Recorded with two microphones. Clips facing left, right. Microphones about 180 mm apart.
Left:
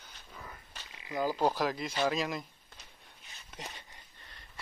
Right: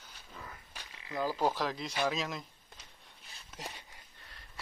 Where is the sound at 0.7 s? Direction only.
10° right (ahead or behind).